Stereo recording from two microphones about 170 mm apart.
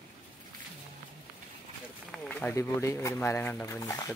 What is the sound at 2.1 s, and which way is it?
Speech, 10° left (ahead or behind).